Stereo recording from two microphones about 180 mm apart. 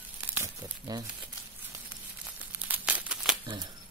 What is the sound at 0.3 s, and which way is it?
Crumpling, 15° right (ahead or behind).